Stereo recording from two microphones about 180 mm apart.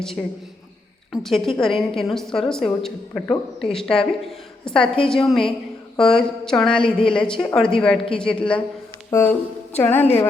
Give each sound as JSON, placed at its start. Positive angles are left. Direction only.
{"t": 0.2, "sound": "a woman's voice", "side_deg": 5}
{"t": 6.7, "sound": "speech", "side_deg": 30}
{"t": 7.1, "sound": "a woman's voice", "side_deg": 5}